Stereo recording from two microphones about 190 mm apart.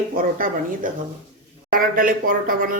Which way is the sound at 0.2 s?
45° right (ahead or behind).